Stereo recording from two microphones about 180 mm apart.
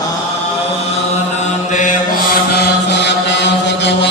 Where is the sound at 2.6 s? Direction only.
70° left (ahead or behind).